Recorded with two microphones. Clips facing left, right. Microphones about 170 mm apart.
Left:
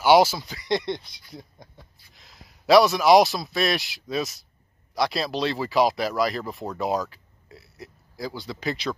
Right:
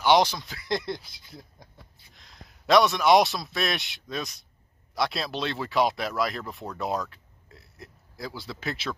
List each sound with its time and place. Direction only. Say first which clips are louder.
0.0 s speech: left 4 dB; 5° left (ahead or behind)